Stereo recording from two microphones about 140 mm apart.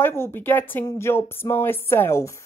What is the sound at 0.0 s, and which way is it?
Speech, 15° left (ahead or behind).